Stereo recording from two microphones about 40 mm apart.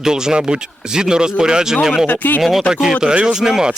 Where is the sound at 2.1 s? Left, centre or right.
Left.